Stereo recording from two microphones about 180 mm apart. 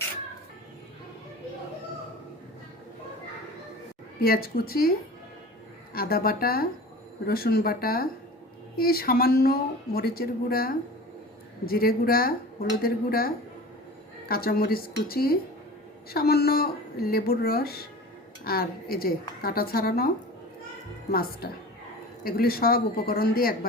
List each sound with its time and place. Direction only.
4.2 s speech: 55° left (ahead or behind)
21.1 s speech: 55° left (ahead or behind)